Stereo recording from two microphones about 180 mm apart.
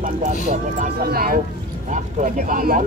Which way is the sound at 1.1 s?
55° right (ahead or behind).